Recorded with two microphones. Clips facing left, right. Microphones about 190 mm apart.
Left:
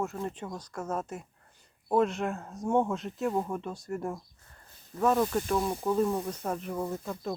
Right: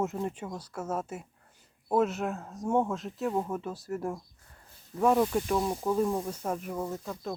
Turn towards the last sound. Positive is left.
turn(degrees=0)  # may be behind; listen again after turning